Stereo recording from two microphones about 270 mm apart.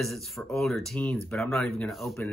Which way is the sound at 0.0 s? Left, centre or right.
Centre.